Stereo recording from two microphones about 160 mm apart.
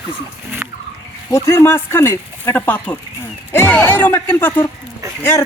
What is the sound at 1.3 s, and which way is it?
Speech, 15° left (ahead or behind).